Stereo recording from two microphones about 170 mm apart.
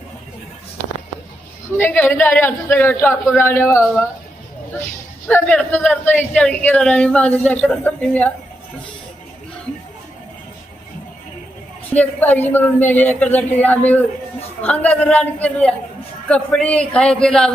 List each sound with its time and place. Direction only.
1.8 s speech: 10° left (ahead or behind)
5.3 s speech: 10° left (ahead or behind)
11.9 s a man's voice: 10° left (ahead or behind)